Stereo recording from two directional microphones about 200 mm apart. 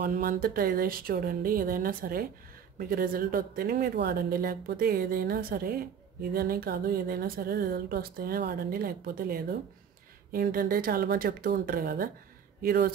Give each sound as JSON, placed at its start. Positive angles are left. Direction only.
{"t": 0.0, "sound": "speech", "side_deg": -45}